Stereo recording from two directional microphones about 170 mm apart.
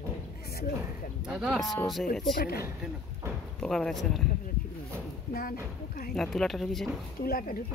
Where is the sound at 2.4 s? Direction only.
60° left (ahead or behind).